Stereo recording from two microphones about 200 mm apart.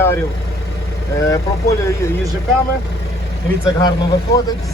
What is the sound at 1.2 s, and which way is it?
Speech, 15° left (ahead or behind).